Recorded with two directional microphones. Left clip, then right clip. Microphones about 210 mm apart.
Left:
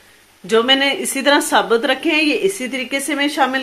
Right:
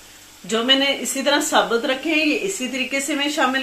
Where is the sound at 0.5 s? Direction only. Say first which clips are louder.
Left 4 dB; 50° left (ahead or behind).